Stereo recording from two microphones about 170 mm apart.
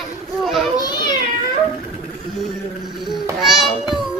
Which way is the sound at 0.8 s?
25° left (ahead or behind).